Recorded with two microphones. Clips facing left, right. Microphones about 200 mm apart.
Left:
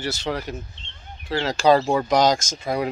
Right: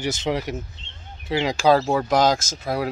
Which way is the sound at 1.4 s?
5° right (ahead or behind).